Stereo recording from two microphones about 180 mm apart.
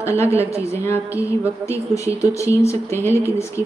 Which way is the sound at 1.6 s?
15° left (ahead or behind).